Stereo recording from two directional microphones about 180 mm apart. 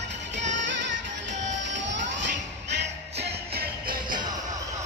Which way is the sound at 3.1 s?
65° right (ahead or behind).